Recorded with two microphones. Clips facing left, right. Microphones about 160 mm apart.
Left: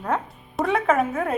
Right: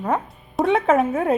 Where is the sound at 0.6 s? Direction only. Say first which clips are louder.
Right 3 dB; 30° right (ahead or behind).